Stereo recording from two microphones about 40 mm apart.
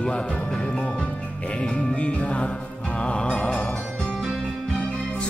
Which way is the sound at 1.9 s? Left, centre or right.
Left.